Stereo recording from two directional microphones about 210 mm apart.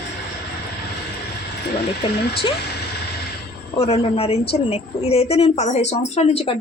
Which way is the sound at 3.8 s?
30° left (ahead or behind).